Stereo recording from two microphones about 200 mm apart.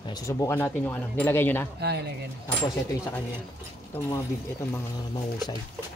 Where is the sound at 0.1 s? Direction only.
15° left (ahead or behind).